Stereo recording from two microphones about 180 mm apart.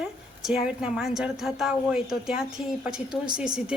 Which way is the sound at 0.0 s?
Centre (ahead or behind).